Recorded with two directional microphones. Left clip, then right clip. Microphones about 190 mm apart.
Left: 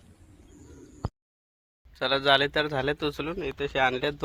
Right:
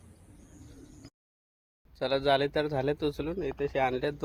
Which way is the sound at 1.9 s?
5° left (ahead or behind).